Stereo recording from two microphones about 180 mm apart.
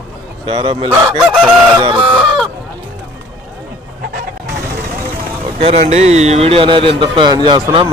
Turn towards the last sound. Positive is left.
turn(degrees=-25)  # may be behind; listen again after turning